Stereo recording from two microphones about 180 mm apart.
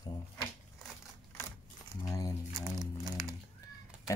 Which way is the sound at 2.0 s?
20° left (ahead or behind).